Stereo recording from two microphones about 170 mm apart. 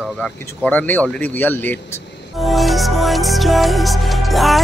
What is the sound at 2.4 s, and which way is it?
Music, centre (ahead or behind).